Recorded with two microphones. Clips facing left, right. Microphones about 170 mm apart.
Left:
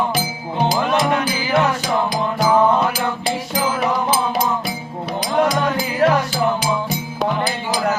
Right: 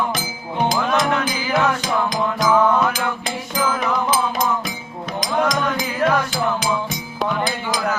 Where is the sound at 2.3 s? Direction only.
35° left (ahead or behind).